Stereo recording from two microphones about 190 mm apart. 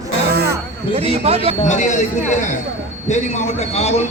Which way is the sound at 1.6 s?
40° left (ahead or behind).